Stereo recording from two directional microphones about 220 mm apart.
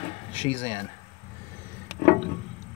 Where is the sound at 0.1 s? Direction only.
25° left (ahead or behind).